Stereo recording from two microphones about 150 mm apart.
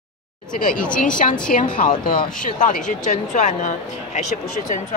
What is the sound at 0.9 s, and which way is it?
A woman's voice, 60° left (ahead or behind).